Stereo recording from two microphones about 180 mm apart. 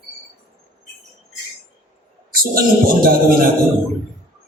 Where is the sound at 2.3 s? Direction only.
55° right (ahead or behind).